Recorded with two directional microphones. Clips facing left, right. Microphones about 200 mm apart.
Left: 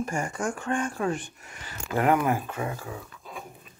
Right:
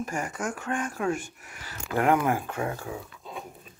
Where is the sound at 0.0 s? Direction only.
5° right (ahead or behind).